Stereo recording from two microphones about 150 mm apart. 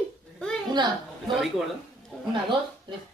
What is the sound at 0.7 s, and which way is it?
Speech, 30° right (ahead or behind).